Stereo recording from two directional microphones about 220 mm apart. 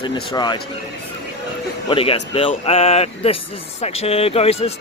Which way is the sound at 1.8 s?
25° left (ahead or behind).